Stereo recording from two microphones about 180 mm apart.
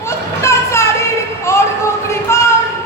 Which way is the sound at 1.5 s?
15° left (ahead or behind).